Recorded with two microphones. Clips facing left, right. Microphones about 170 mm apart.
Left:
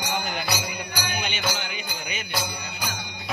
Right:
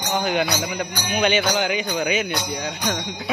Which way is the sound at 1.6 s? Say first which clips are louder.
Right 12 dB; 90° right.